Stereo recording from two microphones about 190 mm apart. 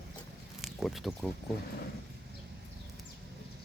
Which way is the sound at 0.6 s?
Centre (ahead or behind).